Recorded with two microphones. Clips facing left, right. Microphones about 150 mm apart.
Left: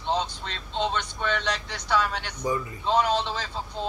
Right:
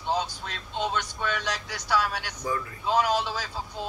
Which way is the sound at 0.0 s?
10° right (ahead or behind).